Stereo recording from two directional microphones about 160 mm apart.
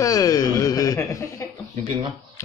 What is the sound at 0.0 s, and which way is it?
Chuckle, 20° left (ahead or behind).